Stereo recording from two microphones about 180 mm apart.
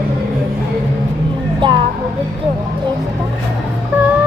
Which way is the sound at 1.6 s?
25° right (ahead or behind).